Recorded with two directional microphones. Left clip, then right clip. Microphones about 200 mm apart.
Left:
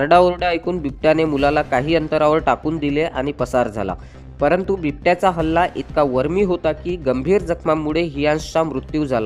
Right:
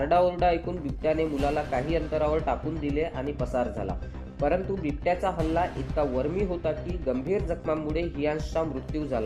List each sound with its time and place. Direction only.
0.0 s a man's voice: 45° left (ahead or behind)